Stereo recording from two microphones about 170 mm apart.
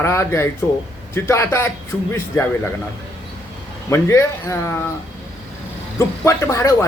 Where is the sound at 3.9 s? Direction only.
15° left (ahead or behind).